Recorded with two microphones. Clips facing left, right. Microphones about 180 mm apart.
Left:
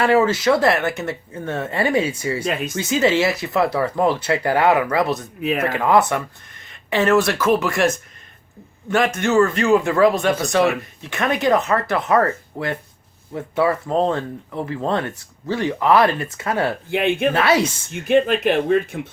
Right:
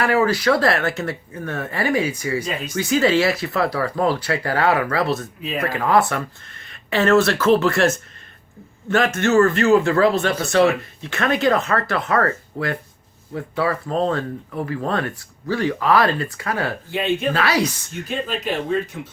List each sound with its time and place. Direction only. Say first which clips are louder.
0.0 s speech: left 2 dB; 25° left (ahead or behind)
2.5 s speech: left 3 dB; 55° left (ahead or behind)
2.7 s speech: right 2 dB; 20° left (ahead or behind)
16.9 s speech: left 2 dB; 60° left (ahead or behind)
17.3 s speech: left 3 dB; 25° left (ahead or behind)
18.1 s speech: left 10 dB; 60° left (ahead or behind)